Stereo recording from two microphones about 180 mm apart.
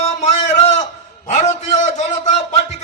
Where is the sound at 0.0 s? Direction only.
40° left (ahead or behind).